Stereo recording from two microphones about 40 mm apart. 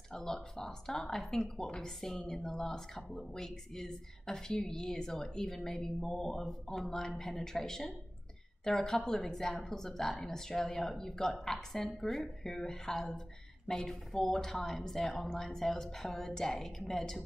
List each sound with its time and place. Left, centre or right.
0.1 s a woman's voice: centre